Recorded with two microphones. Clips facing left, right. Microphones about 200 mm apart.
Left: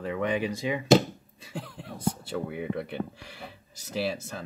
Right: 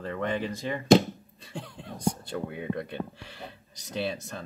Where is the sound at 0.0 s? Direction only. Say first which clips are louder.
Left 2 dB; 10° left (ahead or behind).